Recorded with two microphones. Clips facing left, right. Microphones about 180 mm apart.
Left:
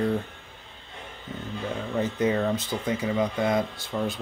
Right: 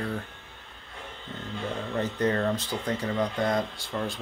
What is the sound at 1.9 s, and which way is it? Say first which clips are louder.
Speech: left 2 dB; 5° left (ahead or behind).